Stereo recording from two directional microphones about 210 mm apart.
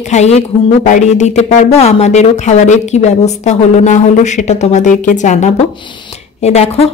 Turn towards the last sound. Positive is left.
turn(degrees=30)  # may be behind; listen again after turning